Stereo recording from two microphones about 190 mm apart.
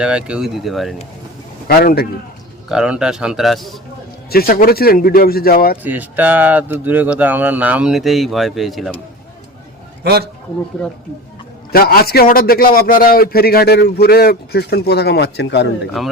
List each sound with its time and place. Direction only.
0.0 s a man's voice: 5° right (ahead or behind)
1.6 s a man's voice: 55° left (ahead or behind)
2.6 s a man's voice: 5° right (ahead or behind)
4.3 s speech: 55° left (ahead or behind)
5.8 s speech: 10° right (ahead or behind)
10.0 s a man's voice: 55° right (ahead or behind)
10.8 s a man's voice: 5° left (ahead or behind)
11.7 s a man's voice: 50° left (ahead or behind)